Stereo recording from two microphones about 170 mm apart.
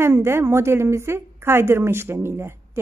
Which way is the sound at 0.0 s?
15° right (ahead or behind).